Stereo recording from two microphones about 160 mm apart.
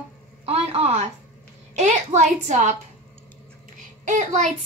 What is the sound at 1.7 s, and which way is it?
A woman's voice, 45° right (ahead or behind).